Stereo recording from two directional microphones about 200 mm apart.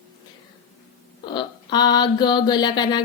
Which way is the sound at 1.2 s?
20° left (ahead or behind).